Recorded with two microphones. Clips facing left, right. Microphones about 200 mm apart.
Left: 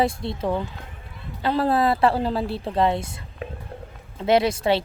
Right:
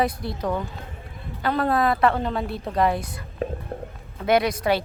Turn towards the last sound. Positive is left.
turn(degrees=25)  # may be behind; listen again after turning